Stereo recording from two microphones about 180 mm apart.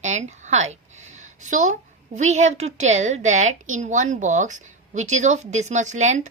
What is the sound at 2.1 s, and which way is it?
A woman's voice, 40° right (ahead or behind).